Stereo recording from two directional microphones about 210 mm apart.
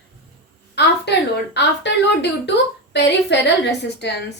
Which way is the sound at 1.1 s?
55° left (ahead or behind).